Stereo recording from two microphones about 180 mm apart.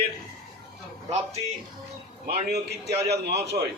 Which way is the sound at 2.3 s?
65° right (ahead or behind).